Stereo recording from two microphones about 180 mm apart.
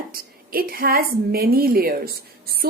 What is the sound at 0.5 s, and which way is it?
Speech, 55° right (ahead or behind).